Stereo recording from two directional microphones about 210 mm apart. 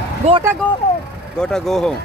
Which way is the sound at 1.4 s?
Centre (ahead or behind).